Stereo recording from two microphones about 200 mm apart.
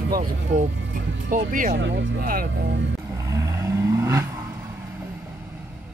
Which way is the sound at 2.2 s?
50° right (ahead or behind).